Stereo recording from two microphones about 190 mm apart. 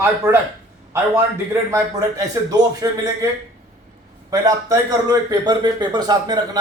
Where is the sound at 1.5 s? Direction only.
15° right (ahead or behind).